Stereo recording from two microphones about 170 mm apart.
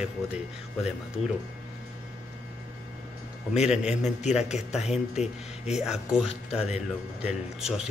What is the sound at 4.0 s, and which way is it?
Speech, 40° left (ahead or behind).